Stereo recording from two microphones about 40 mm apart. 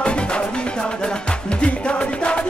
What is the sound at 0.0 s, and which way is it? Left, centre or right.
Music, left.